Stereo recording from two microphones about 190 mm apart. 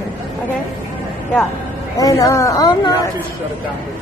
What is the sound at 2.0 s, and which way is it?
Speech, 15° left (ahead or behind).